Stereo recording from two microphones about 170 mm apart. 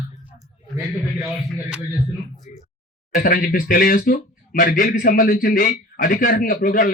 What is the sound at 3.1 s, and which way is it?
Speech, 60° left (ahead or behind).